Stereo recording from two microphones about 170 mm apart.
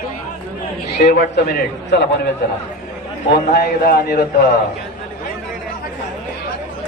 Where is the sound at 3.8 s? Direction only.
65° left (ahead or behind).